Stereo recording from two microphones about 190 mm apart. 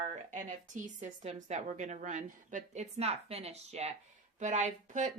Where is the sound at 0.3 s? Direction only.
40° right (ahead or behind).